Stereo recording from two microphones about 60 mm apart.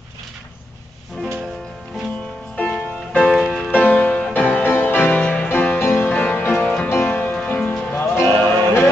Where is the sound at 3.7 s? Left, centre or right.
Left.